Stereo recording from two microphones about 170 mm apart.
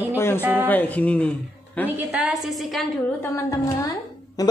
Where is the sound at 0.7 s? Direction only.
10° left (ahead or behind).